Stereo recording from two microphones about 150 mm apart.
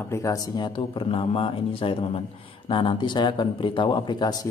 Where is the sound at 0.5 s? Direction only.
30° left (ahead or behind).